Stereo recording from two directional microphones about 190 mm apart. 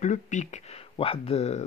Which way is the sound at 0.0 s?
40° left (ahead or behind).